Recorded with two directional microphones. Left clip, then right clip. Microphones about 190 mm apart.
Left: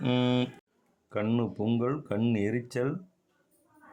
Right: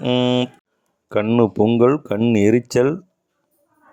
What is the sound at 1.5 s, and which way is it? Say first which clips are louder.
Speech: right 14 dB; 30° right (ahead or behind).